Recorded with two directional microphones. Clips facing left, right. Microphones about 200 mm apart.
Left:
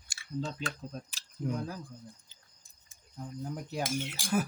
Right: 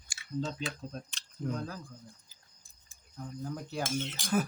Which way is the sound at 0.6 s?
5° left (ahead or behind).